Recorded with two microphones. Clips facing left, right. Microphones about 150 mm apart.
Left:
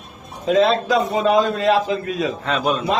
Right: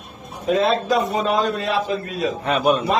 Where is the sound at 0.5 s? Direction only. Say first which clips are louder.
Left 2 dB; 90° left.